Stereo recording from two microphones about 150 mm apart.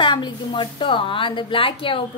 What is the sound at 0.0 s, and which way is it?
A woman's voice, 30° left (ahead or behind).